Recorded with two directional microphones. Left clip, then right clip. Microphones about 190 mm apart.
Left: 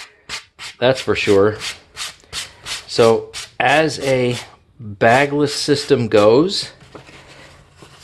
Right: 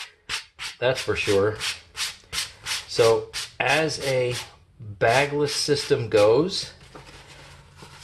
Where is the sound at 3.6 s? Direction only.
70° left (ahead or behind).